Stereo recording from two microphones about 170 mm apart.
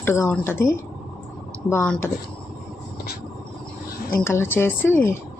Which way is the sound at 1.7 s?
15° left (ahead or behind).